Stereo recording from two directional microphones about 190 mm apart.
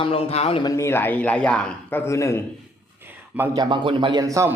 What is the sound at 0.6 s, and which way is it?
A man's voice, 15° left (ahead or behind).